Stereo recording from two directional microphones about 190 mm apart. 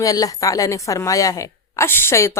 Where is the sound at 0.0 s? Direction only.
20° left (ahead or behind).